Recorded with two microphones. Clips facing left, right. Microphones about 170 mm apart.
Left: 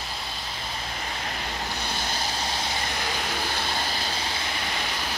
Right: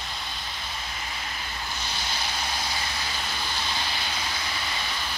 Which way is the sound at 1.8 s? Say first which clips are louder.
Left 3 dB; 50° left (ahead or behind).